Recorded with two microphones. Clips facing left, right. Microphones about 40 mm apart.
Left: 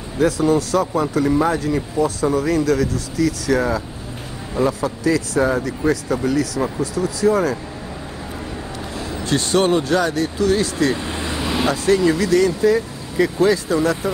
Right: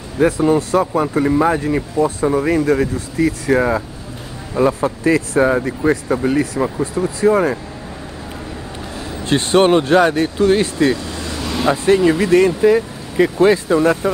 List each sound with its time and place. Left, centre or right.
0.2 s speech: right
9.2 s speech: right
11.0 s vehicle: left
11.7 s speech: right